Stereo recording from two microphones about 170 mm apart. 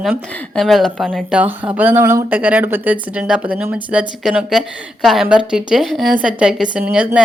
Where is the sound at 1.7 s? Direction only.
10° right (ahead or behind).